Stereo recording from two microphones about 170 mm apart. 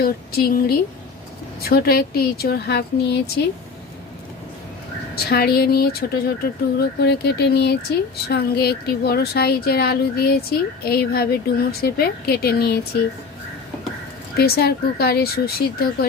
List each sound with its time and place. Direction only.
0.0 s speech: 65° left (ahead or behind)
5.1 s speech: 65° left (ahead or behind)
14.3 s speech: 65° left (ahead or behind)